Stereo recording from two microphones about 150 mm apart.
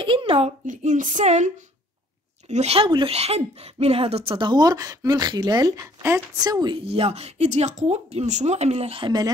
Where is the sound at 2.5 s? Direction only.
45° right (ahead or behind); by 6.7 s 25° right (ahead or behind).